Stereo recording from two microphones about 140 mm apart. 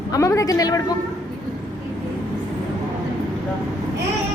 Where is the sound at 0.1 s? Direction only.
20° left (ahead or behind).